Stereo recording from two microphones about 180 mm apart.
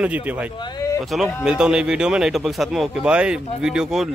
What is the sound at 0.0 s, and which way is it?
Speech, 10° right (ahead or behind).